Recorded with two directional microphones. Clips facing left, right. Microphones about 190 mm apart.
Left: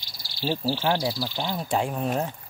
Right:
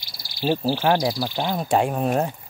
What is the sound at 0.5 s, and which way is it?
Cricket, 55° right (ahead or behind).